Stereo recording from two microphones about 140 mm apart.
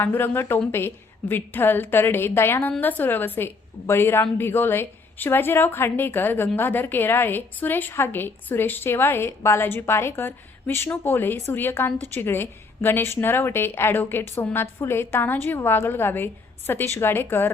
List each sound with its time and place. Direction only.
0.0 s a woman's voice: 15° left (ahead or behind)